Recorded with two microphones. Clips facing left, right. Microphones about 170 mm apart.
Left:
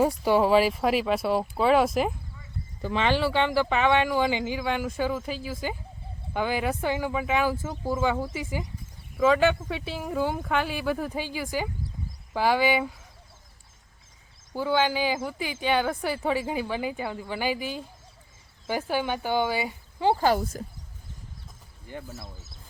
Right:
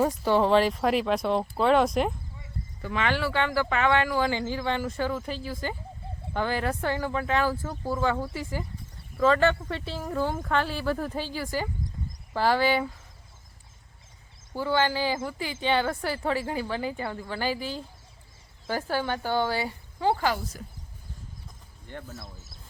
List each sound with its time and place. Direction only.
0.0 s speech: 10° left (ahead or behind)
2.8 s speech: 25° left (ahead or behind)
14.5 s speech: 15° left (ahead or behind)
20.1 s speech: 35° left (ahead or behind)
21.8 s speech: 10° left (ahead or behind)